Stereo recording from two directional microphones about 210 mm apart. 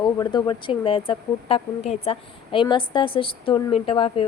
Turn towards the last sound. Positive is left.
turn(degrees=25)  # may be behind; listen again after turning